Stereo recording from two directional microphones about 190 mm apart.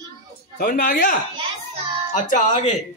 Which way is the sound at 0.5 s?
45° left (ahead or behind).